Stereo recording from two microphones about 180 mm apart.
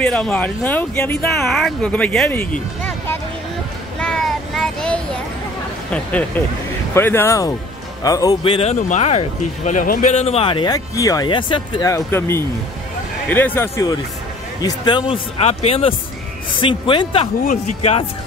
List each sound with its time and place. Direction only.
0.0 s speech: 5° left (ahead or behind)
1.4 s speech: centre (ahead or behind)
4.0 s child singing: 5° left (ahead or behind)
5.9 s speech: 10° left (ahead or behind)
8.5 s speech: 40° left (ahead or behind); by 13.9 s 15° left (ahead or behind)
14.6 s speech: 25° left (ahead or behind)